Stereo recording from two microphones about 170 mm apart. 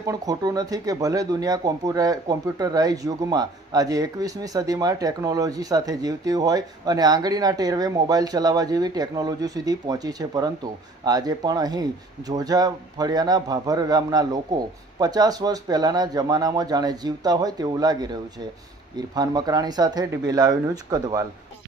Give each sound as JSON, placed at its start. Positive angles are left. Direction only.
{"t": 0.0, "sound": "speech", "side_deg": -20}